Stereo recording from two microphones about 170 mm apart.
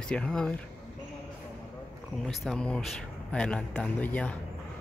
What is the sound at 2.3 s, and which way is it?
A man's voice, 5° left (ahead or behind).